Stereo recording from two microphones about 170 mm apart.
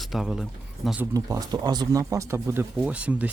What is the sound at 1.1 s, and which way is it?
Speech, 20° right (ahead or behind).